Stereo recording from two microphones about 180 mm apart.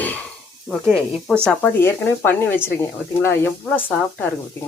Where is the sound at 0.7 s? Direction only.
5° left (ahead or behind).